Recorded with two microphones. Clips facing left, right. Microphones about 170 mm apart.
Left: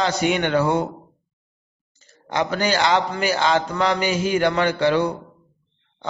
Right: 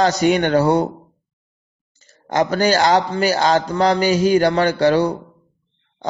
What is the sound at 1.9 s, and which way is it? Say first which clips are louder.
A man's voice: right 5 dB; 45° right (ahead or behind).